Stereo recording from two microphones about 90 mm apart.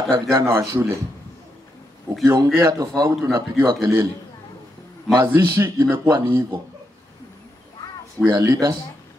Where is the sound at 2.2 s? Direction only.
40° right (ahead or behind).